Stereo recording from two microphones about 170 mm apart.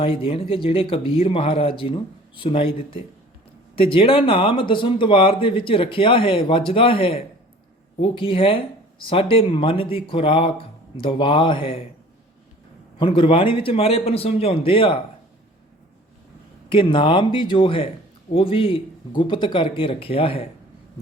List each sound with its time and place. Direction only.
0.0 s speech: 35° left (ahead or behind)
13.0 s speech: 30° left (ahead or behind)
16.6 s speech: 30° left (ahead or behind)